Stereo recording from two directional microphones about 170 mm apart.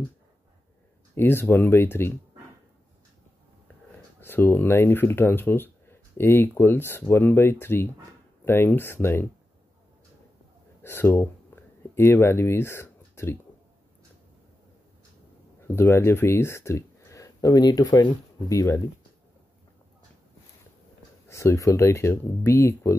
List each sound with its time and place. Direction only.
1.1 s speech: 15° left (ahead or behind)
4.2 s speech: 15° left (ahead or behind)
10.8 s a sound: 15° left (ahead or behind)
15.6 s speech: 15° left (ahead or behind)
21.3 s speech: 15° left (ahead or behind)